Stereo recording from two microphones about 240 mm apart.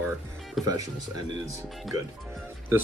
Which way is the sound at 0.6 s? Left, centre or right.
Centre.